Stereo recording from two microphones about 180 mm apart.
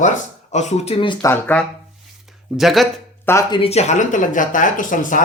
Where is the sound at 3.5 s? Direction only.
35° left (ahead or behind).